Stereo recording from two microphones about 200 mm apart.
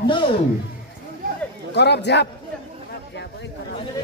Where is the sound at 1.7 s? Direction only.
60° left (ahead or behind).